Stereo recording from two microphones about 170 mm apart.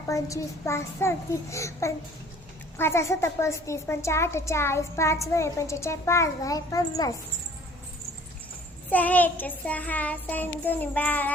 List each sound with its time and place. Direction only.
0.1 s a child's voice: 20° left (ahead or behind)
8.9 s a child's voice: 10° left (ahead or behind)